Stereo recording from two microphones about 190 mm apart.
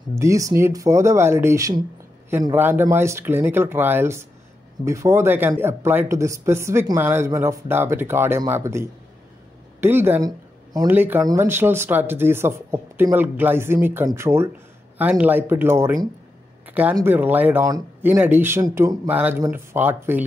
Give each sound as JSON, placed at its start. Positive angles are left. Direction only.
{"t": 0.1, "sound": "speech", "side_deg": -15}
{"t": 16.6, "sound": "a sound", "side_deg": -10}
{"t": 16.9, "sound": "speech", "side_deg": -10}